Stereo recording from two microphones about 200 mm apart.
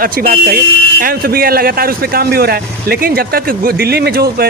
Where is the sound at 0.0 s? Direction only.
45° right (ahead or behind).